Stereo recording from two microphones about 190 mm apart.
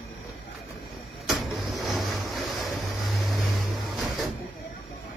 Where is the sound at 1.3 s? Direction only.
Centre (ahead or behind).